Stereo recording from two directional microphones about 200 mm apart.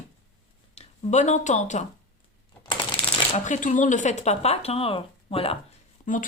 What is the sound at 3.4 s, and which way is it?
Speech, 40° left (ahead or behind).